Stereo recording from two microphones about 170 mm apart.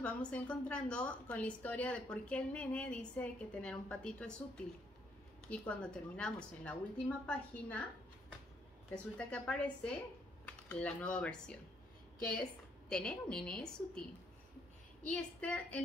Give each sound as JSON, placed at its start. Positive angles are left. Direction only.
{"t": 0.3, "sound": "a woman's voice", "side_deg": 5}
{"t": 8.9, "sound": "a woman's voice", "side_deg": 5}
{"t": 12.9, "sound": "a woman's voice", "side_deg": 5}
{"t": 15.0, "sound": "a woman's voice", "side_deg": 5}